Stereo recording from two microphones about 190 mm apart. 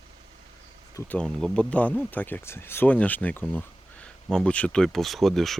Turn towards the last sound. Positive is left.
turn(degrees=0)  # may be behind; listen again after turning